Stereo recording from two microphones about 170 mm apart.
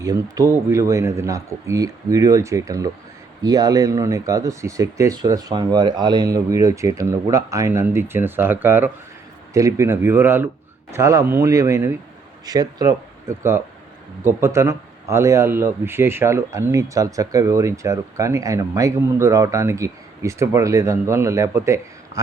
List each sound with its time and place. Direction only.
0.0 s speech: 20° right (ahead or behind)